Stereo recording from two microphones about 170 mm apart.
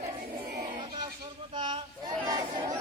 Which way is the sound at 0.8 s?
30° right (ahead or behind).